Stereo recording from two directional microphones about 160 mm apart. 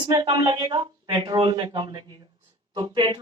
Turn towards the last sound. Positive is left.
turn(degrees=-30)  # may be behind; listen again after turning